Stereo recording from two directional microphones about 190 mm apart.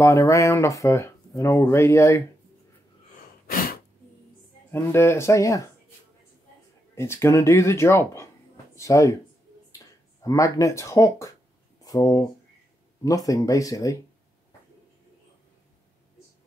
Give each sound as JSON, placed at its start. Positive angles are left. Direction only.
{"t": 0.0, "sound": "speech", "side_deg": 15}
{"t": 3.4, "sound": "a sound", "side_deg": 50}
{"t": 4.6, "sound": "speech", "side_deg": 15}
{"t": 7.0, "sound": "speech", "side_deg": 15}
{"t": 10.2, "sound": "speech", "side_deg": 20}